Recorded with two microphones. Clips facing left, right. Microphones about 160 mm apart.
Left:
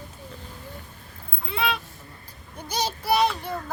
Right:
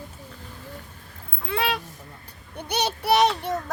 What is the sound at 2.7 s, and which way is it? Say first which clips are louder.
Child singing: right 2 dB; 65° right (ahead or behind).